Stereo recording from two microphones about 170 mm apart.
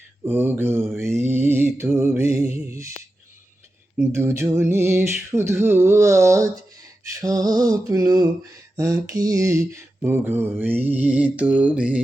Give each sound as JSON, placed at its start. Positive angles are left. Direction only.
{"t": 0.3, "sound": "mantra", "side_deg": -10}
{"t": 3.9, "sound": "mantra", "side_deg": -15}
{"t": 7.1, "sound": "a sound", "side_deg": -20}
{"t": 8.7, "sound": "mantra", "side_deg": -20}